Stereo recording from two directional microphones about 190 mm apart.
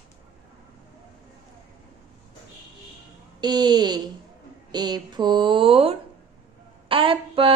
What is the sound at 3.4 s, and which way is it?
Speech, 20° right (ahead or behind).